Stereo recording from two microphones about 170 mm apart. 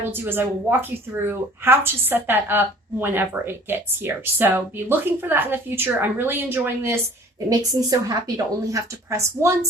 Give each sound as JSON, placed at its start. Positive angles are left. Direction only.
{"t": 0.2, "sound": "a woman's voice", "side_deg": -15}